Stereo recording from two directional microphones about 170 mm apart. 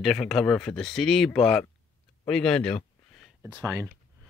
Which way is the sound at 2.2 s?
5° left (ahead or behind).